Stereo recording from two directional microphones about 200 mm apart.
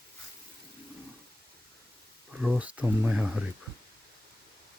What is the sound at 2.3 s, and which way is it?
Speech, 5° right (ahead or behind).